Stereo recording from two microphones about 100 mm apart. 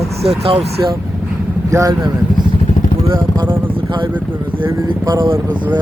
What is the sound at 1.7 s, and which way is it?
Speech, 30° right (ahead or behind).